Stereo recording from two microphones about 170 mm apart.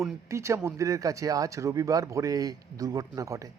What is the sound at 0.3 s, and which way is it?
Speech, 15° right (ahead or behind).